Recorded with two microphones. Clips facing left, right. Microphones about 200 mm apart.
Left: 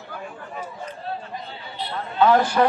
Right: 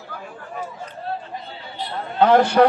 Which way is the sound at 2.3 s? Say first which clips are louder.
Right 5 dB; 65° right (ahead or behind).